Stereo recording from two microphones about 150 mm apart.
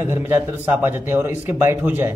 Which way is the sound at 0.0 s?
15° right (ahead or behind).